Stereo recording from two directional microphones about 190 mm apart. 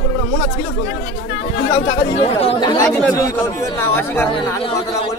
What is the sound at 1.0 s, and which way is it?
Speech, 35° left (ahead or behind).